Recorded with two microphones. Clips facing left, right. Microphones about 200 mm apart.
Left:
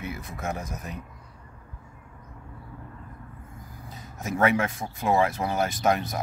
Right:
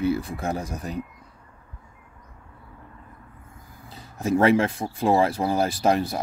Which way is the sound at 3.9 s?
30° right (ahead or behind).